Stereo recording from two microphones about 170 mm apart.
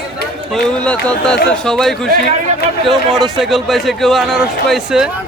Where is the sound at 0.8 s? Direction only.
5° left (ahead or behind).